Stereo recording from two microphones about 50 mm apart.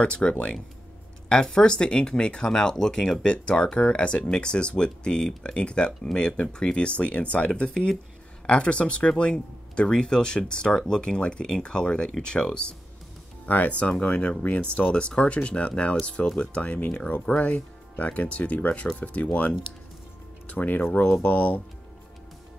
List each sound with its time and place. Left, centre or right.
0.0 s speech: left
13.5 s speech: left
20.4 s speech: left